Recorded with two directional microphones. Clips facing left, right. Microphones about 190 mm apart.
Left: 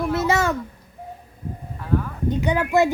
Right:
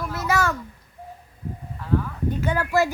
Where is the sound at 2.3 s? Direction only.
20° left (ahead or behind).